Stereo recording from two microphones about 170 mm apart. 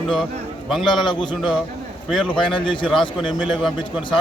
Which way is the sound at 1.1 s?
30° left (ahead or behind).